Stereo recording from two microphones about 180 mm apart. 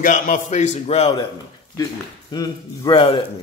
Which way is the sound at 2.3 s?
25° left (ahead or behind).